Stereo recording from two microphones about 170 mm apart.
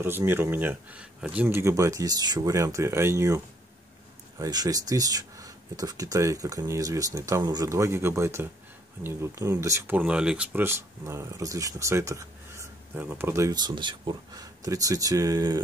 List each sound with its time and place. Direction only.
0.0 s speech: 15° right (ahead or behind)